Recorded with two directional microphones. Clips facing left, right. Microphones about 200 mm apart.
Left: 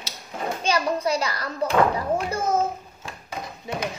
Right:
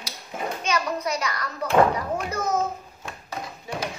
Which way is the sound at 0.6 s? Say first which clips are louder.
Left 4 dB; 30° left (ahead or behind).